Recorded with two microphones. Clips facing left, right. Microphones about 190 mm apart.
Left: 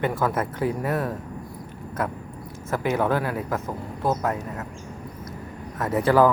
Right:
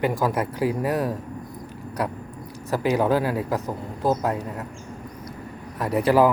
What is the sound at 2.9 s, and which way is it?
Speech, 15° right (ahead or behind).